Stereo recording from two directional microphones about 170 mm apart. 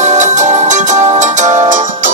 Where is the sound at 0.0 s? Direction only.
45° right (ahead or behind).